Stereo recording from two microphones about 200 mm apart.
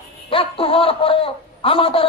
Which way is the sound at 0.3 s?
25° left (ahead or behind).